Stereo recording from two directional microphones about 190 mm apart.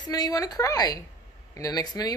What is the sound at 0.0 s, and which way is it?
Speech, 20° left (ahead or behind).